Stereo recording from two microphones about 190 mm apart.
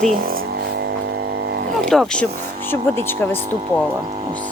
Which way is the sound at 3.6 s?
30° right (ahead or behind).